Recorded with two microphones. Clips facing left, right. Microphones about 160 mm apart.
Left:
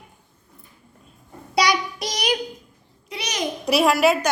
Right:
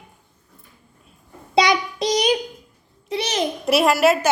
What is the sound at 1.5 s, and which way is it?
Child singing, 20° right (ahead or behind).